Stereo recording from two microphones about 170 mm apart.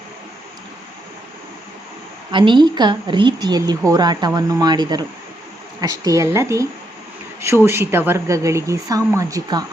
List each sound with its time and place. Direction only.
2.3 s a woman's voice: 30° right (ahead or behind)